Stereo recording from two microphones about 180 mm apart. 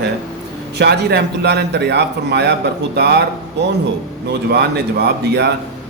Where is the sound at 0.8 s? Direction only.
65° right (ahead or behind).